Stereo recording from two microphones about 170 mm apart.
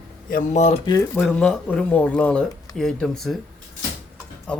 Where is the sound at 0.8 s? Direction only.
25° left (ahead or behind).